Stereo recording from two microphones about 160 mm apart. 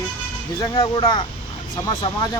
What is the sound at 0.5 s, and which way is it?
Speech, 30° left (ahead or behind).